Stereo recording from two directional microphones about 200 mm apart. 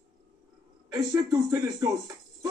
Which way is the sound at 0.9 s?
15° right (ahead or behind).